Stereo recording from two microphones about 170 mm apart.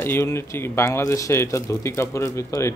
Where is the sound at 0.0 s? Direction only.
15° left (ahead or behind).